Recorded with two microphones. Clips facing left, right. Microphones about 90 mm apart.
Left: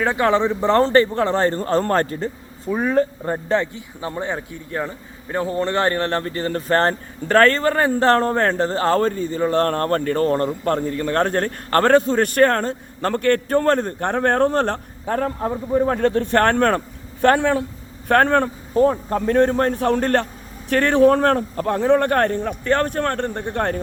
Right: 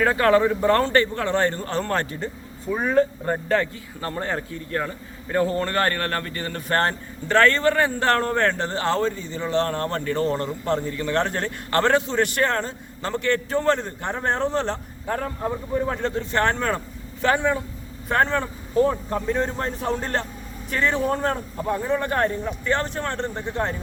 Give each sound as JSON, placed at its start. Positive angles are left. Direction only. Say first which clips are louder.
{"t": 0.0, "sound": "speech", "louder": "even", "side_deg": 20}
{"t": 2.9, "sound": "a man's voice", "louder": "right 2 dB", "side_deg": 20}
{"t": 18.8, "sound": "a man's voice", "louder": "left 4 dB", "side_deg": 40}